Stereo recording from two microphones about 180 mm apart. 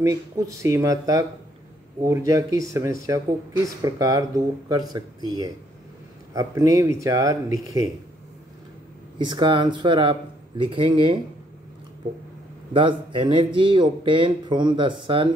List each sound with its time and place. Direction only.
0.0 s speech: 20° right (ahead or behind)
9.2 s speech: 25° right (ahead or behind)
12.7 s speech: 30° right (ahead or behind)